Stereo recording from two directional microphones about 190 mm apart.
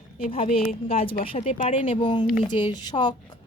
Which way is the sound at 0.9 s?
30° left (ahead or behind).